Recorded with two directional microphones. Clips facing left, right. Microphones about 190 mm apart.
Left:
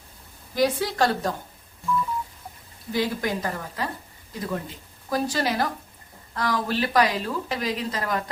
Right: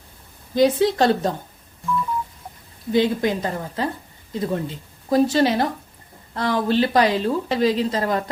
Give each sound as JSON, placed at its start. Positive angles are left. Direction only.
{"t": 0.5, "sound": "speech", "side_deg": -25}
{"t": 2.9, "sound": "speech", "side_deg": -25}